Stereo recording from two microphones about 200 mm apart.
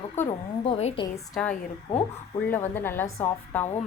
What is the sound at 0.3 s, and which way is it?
Speech, 30° left (ahead or behind).